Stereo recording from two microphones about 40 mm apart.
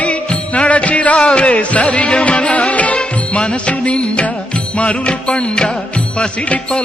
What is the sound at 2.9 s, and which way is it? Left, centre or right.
Music, left.